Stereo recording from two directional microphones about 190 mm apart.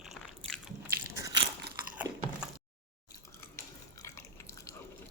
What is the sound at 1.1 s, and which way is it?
Crunch, 20° right (ahead or behind).